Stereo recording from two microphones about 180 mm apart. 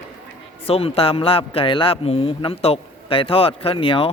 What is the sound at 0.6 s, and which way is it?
A man's voice, 35° left (ahead or behind).